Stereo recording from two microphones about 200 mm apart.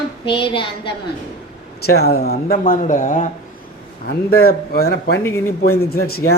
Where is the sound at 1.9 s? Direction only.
50° left (ahead or behind).